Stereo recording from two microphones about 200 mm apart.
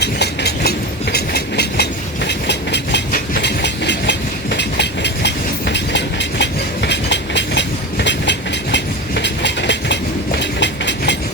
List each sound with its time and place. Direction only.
0.0 s train: 55° left (ahead or behind)